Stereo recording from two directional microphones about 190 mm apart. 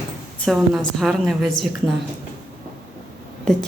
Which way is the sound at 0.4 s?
Centre (ahead or behind).